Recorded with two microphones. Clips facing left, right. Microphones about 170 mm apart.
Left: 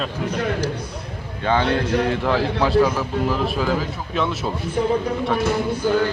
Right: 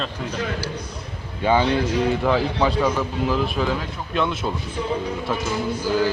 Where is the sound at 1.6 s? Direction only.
60° left (ahead or behind).